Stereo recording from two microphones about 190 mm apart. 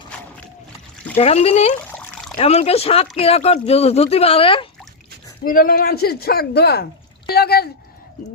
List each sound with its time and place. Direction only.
1.1 s speech: 35° left (ahead or behind)
1.9 s a sound: 5° left (ahead or behind)
2.4 s speech: 35° left (ahead or behind)
5.5 s speech: 50° left (ahead or behind)